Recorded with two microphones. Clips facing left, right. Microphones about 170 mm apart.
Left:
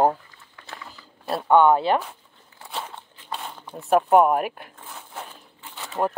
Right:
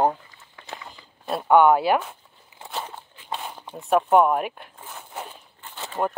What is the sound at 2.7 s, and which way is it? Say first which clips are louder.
Walk: right 1 dB; centre (ahead or behind).